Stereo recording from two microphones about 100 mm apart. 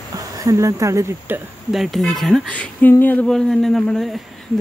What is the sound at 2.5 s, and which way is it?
Speech, 15° left (ahead or behind).